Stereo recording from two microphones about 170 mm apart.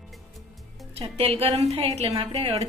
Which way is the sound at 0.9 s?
35° right (ahead or behind).